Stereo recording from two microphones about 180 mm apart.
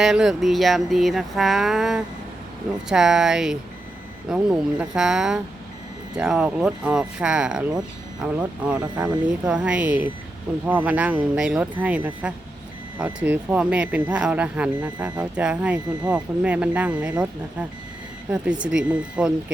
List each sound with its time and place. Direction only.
0.0 s speech: centre (ahead or behind)